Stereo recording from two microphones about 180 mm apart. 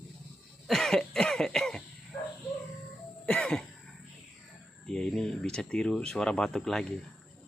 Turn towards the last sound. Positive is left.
turn(degrees=5)  # may be behind; listen again after turning